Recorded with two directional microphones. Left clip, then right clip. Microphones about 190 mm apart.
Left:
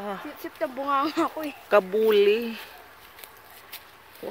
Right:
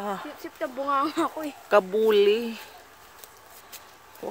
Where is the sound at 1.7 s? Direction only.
10° right (ahead or behind).